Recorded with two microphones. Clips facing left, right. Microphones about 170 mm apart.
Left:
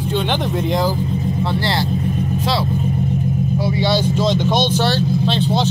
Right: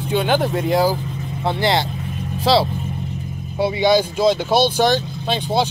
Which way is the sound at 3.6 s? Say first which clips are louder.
Right 5 dB; 15° right (ahead or behind).